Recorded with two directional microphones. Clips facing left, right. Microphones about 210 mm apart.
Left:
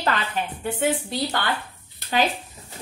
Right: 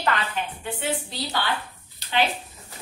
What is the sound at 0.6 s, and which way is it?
Speech, 45° left (ahead or behind).